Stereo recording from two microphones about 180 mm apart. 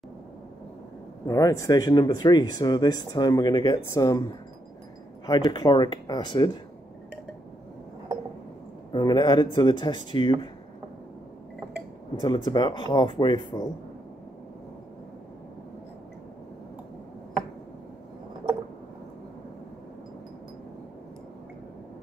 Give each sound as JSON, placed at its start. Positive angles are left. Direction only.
{"t": 1.2, "sound": "speech", "side_deg": 20}
{"t": 5.2, "sound": "speech", "side_deg": 25}
{"t": 8.9, "sound": "speech", "side_deg": 25}
{"t": 12.2, "sound": "speech", "side_deg": 25}